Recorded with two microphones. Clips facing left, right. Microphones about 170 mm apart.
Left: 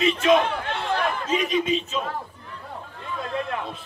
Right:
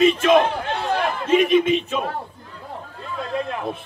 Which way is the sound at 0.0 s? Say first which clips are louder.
Right 4 dB; 55° right (ahead or behind).